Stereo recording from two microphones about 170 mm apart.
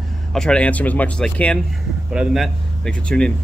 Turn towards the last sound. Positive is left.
turn(degrees=5)  # may be behind; listen again after turning